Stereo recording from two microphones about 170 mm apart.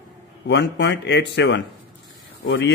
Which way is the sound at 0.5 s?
90° left.